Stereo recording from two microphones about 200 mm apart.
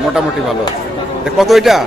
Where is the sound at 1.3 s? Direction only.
Centre (ahead or behind).